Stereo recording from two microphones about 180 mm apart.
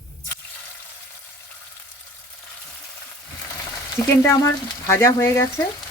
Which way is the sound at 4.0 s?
10° left (ahead or behind).